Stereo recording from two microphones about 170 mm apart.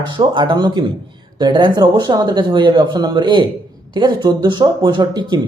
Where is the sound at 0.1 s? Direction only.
25° right (ahead or behind).